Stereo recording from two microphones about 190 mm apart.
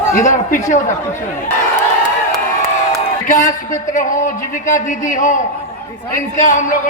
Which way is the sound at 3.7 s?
40° left (ahead or behind).